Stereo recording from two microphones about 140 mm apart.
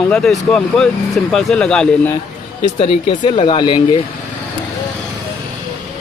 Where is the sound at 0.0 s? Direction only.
Centre (ahead or behind).